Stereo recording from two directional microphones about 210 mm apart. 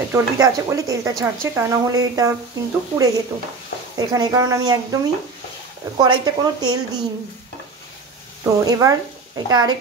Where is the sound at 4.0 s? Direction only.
20° right (ahead or behind).